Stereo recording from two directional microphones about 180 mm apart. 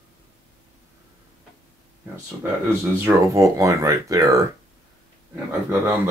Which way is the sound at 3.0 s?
15° right (ahead or behind).